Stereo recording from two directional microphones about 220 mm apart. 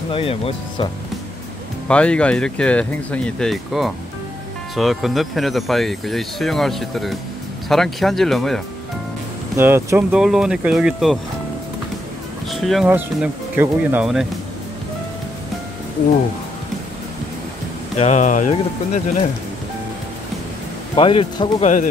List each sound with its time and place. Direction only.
0.1 s a man's voice: 25° left (ahead or behind)
1.9 s speech: 5° left (ahead or behind)
9.6 s speech: 10° right (ahead or behind)
12.4 s speech: centre (ahead or behind)
17.9 s speech: 30° left (ahead or behind)
20.9 s a man's voice: 25° left (ahead or behind)